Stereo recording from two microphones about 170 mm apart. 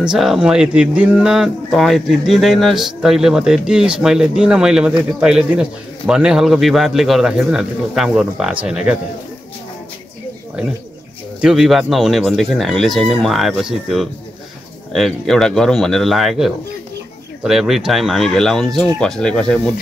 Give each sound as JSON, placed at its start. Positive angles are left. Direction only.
{"t": 0.0, "sound": "speech", "side_deg": 0}
{"t": 11.4, "sound": "speech", "side_deg": 0}